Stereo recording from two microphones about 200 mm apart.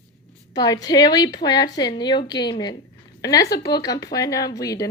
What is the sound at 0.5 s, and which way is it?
A woman's voice, 20° left (ahead or behind).